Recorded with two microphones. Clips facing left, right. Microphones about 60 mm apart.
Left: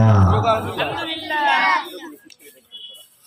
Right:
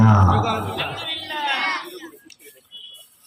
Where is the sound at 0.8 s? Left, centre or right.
Left.